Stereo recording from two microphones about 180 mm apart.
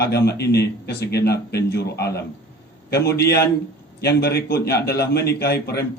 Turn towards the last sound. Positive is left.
turn(degrees=65)  # may be behind; listen again after turning